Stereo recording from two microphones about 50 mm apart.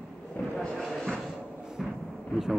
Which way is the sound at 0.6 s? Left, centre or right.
Centre.